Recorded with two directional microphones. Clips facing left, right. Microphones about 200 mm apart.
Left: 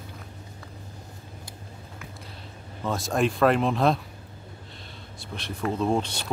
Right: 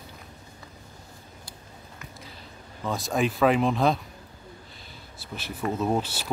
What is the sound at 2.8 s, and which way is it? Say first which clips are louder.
Speech: left 1 dB; centre (ahead or behind).